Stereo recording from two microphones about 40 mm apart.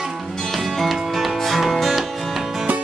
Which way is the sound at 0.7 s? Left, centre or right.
Centre.